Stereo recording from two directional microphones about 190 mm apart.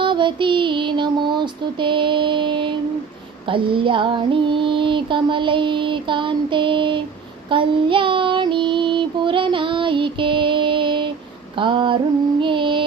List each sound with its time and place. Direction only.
0.0 s child singing: 25° right (ahead or behind)
3.4 s female singing: 25° right (ahead or behind)
7.5 s child singing: 25° right (ahead or behind)
11.5 s female singing: 25° right (ahead or behind)
12.4 s child singing: 25° right (ahead or behind)